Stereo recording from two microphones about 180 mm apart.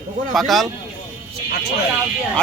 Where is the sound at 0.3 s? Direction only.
Centre (ahead or behind).